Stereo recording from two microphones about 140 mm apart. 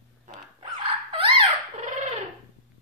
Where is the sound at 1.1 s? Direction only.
40° right (ahead or behind).